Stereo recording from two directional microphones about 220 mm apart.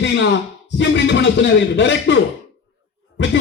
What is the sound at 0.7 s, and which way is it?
A man's voice, 55° left (ahead or behind).